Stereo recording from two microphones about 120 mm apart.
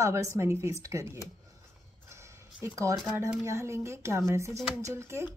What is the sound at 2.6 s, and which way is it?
A woman's voice, 25° right (ahead or behind).